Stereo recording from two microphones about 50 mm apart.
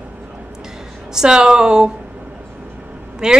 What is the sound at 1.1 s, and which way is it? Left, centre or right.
Speech, centre.